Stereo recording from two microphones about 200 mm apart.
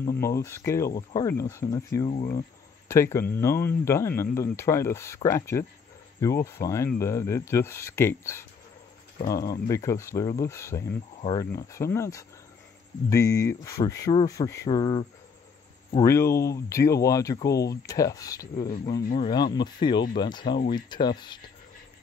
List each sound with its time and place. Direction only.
0.2 s speech: 15° left (ahead or behind)